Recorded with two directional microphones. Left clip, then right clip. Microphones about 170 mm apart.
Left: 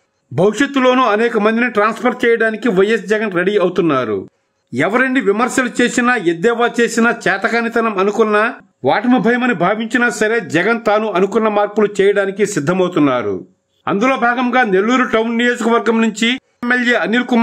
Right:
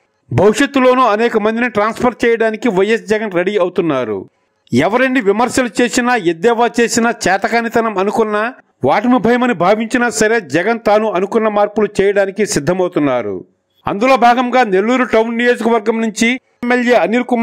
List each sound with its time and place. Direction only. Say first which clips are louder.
0.4 s a man's voice: right 3 dB; 35° right (ahead or behind)